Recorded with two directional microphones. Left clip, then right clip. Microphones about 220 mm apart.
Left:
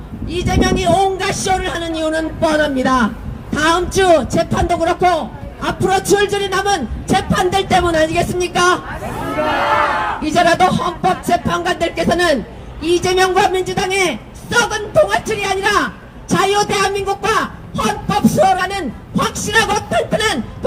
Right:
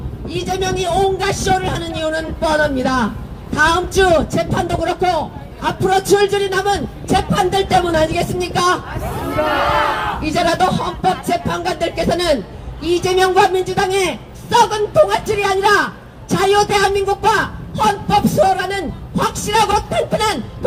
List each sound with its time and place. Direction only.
0.3 s a woman's voice: 25° left (ahead or behind)
10.2 s a woman's voice: 25° left (ahead or behind)